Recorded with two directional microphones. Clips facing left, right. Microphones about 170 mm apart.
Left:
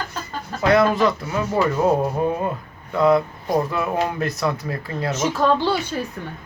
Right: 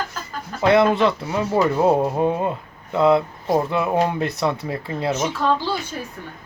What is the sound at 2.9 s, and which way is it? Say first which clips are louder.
Speech: even; 25° right (ahead or behind).